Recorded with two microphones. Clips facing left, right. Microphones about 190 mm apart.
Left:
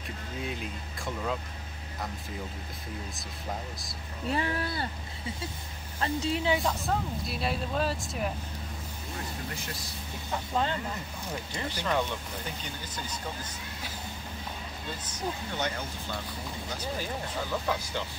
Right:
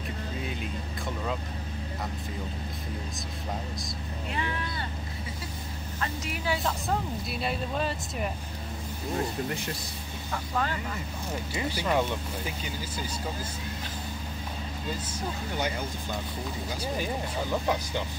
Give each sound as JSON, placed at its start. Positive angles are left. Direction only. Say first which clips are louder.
{"t": 0.5, "sound": "vehicle", "louder": "right 2 dB", "side_deg": 0}
{"t": 4.3, "sound": "speech", "louder": "left 4 dB", "side_deg": 35}
{"t": 5.9, "sound": "a woman's voice", "louder": "left 6 dB", "side_deg": 30}
{"t": 6.6, "sound": "speech", "louder": "even", "side_deg": 0}
{"t": 10.3, "sound": "a woman's voice", "louder": "left 1 dB", "side_deg": 20}
{"t": 11.5, "sound": "speech", "louder": "right 3 dB", "side_deg": -10}
{"t": 15.0, "sound": "speech", "louder": "right 1 dB", "side_deg": -10}